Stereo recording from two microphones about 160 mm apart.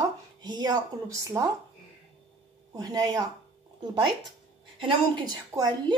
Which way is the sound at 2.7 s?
25° right (ahead or behind).